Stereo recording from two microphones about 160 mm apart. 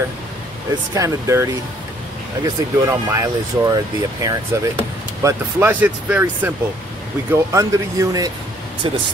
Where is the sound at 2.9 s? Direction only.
20° right (ahead or behind).